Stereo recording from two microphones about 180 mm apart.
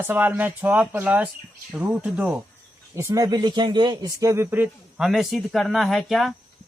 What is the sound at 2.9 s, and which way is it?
Speech, 20° right (ahead or behind).